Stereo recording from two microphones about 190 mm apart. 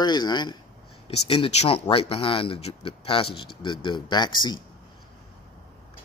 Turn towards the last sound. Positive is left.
turn(degrees=25)  # may be behind; listen again after turning